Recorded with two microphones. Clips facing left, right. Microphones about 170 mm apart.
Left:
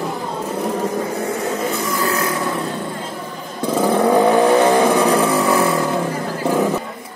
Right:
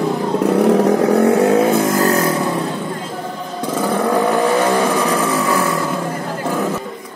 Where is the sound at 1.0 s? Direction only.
65° right (ahead or behind); by 2.2 s 45° right (ahead or behind).